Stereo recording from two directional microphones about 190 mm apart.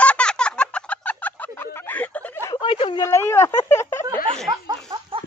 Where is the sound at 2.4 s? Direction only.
25° left (ahead or behind).